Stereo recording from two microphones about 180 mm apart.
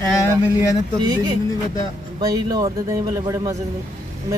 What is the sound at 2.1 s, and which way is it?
A man's voice, 20° right (ahead or behind).